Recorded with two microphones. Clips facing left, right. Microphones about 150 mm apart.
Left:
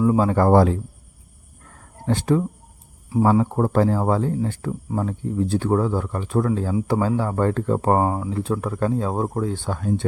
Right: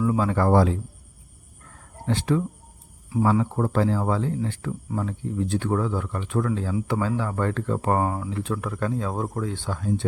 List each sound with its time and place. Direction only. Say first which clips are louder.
0.0 s a man's voice: left 5 dB; 30° left (ahead or behind); by 0.8 s 50° left (ahead or behind)
2.0 s a man's voice: left 3 dB; 40° left (ahead or behind)
9.6 s a man's voice: left 3 dB; 55° left (ahead or behind)